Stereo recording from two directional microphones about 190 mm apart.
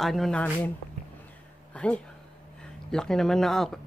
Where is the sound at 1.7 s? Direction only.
5° left (ahead or behind).